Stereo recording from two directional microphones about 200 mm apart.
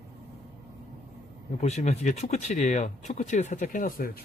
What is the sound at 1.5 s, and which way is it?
Speech, 35° left (ahead or behind).